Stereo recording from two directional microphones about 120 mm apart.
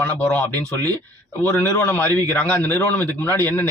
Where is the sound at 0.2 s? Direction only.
10° left (ahead or behind).